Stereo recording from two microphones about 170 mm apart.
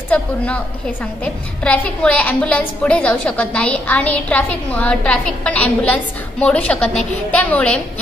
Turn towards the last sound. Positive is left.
turn(degrees=10)  # may be behind; listen again after turning